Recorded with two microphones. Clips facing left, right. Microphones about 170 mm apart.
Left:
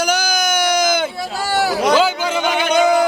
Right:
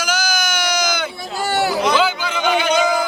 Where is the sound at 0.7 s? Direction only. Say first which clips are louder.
Left 5 dB; 50° left (ahead or behind).